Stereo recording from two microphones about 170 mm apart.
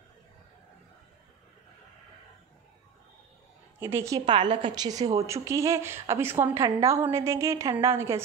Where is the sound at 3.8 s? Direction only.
15° right (ahead or behind).